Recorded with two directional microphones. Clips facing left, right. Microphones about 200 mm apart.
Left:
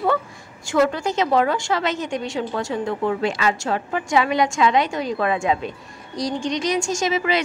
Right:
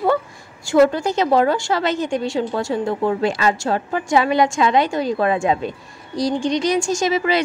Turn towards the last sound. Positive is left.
turn(degrees=-35)  # may be behind; listen again after turning